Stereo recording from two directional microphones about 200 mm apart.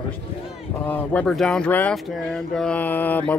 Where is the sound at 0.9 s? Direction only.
5° left (ahead or behind).